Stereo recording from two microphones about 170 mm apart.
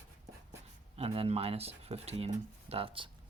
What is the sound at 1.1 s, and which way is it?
Speech, 35° right (ahead or behind).